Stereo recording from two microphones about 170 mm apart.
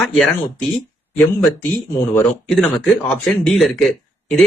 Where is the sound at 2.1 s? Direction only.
5° left (ahead or behind).